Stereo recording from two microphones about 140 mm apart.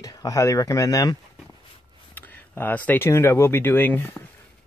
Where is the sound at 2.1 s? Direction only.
15° left (ahead or behind).